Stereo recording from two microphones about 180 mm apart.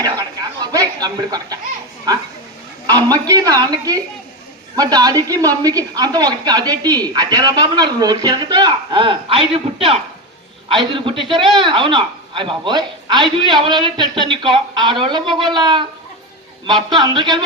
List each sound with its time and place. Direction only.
0.0 s a sound: 20° right (ahead or behind)
2.8 s a woman's voice: 20° right (ahead or behind)
16.9 s speech: 25° right (ahead or behind)